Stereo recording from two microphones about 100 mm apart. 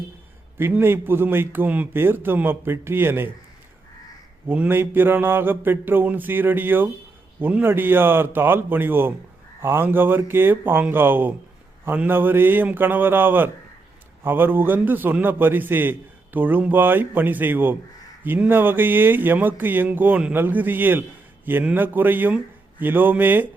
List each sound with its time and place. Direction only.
0.6 s a man's voice: 20° right (ahead or behind)
4.4 s a man's voice: 15° right (ahead or behind)